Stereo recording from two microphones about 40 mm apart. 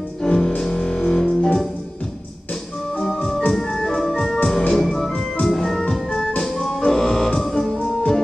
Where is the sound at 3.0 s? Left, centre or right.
Centre.